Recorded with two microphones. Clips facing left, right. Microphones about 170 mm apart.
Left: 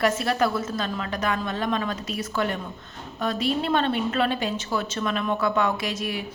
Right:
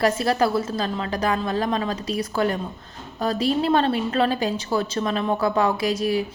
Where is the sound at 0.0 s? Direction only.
35° right (ahead or behind).